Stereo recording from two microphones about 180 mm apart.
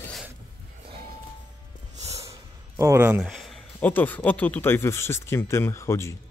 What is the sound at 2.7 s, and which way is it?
Speech, 15° right (ahead or behind).